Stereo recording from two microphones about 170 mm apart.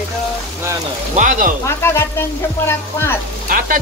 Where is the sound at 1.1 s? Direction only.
50° right (ahead or behind).